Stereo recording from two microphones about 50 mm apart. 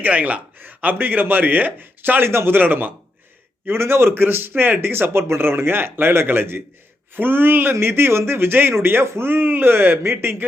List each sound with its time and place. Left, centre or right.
0.0 s speech: right
2.3 s a man's voice: right
2.6 s speech: right
3.7 s speech: right